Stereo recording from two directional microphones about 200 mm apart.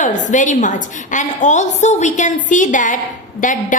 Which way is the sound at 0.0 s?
40° left (ahead or behind).